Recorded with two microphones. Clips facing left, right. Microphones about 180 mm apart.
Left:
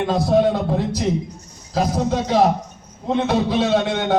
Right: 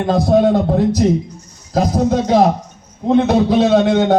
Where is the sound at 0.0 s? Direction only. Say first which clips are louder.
Right 4 dB; 45° right (ahead or behind).